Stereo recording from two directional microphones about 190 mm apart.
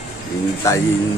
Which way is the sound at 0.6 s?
15° left (ahead or behind).